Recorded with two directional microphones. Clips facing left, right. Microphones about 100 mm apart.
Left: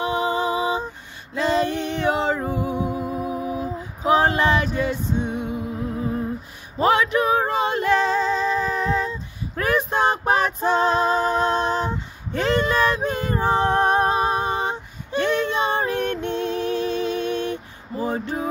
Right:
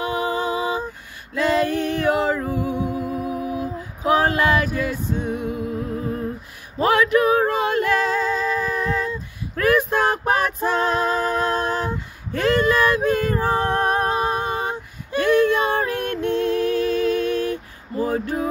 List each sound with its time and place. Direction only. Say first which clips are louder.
0.0 s music: left 1 dB; 25° left (ahead or behind)
1.3 s a sound: right 1 dB; 25° left (ahead or behind)
3.0 s music: right 1 dB; 30° left (ahead or behind)
4.1 s male singing: even; 25° left (ahead or behind)
6.8 s singing: right 2 dB; 25° left (ahead or behind)
18.0 s a sound: right 2 dB; 25° left (ahead or behind)